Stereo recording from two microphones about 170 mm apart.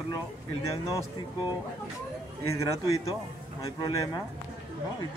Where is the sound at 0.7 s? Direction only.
15° left (ahead or behind).